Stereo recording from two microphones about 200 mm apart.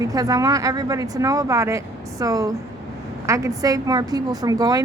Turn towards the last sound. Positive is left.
turn(degrees=-20)  # may be behind; listen again after turning